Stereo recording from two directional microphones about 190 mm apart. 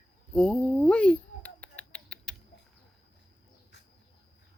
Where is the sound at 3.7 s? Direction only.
65° left (ahead or behind).